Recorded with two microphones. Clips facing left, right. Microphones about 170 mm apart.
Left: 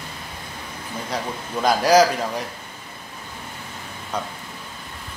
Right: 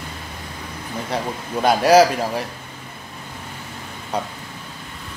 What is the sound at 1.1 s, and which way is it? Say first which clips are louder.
A man's voice: right 3 dB; 25° right (ahead or behind).